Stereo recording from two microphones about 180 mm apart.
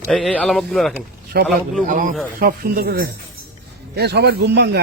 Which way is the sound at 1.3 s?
60° right (ahead or behind).